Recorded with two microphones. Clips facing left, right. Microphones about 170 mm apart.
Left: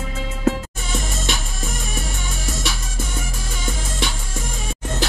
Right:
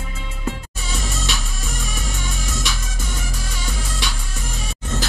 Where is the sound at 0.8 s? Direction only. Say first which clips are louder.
Left 1 dB; 50° left (ahead or behind).